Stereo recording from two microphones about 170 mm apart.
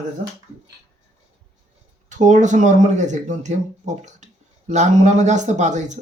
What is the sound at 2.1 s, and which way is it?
Speech, 45° right (ahead or behind).